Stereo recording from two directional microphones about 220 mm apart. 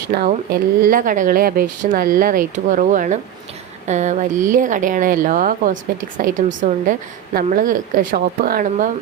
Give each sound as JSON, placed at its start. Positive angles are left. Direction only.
{"t": 0.1, "sound": "speech", "side_deg": -40}